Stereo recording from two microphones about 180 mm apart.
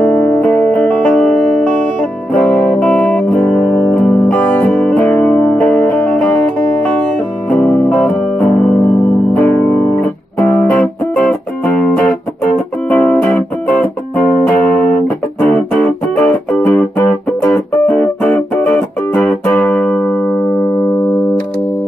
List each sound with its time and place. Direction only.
0.0 s music: 10° left (ahead or behind)
7.5 s music: 10° left (ahead or behind)
15.4 s music: 5° left (ahead or behind)